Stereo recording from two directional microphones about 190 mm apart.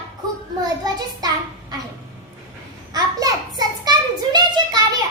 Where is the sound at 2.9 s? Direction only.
20° right (ahead or behind).